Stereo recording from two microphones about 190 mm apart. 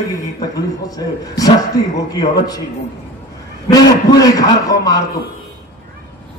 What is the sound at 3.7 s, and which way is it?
A man's voice, 20° left (ahead or behind).